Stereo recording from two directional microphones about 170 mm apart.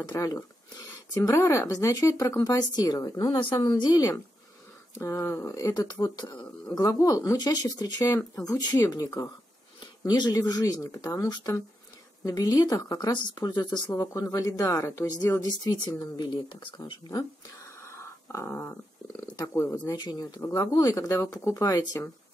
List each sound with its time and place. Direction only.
0.1 s speech: 20° left (ahead or behind)
17.8 s a sound: 15° left (ahead or behind)
19.3 s speech: 20° left (ahead or behind)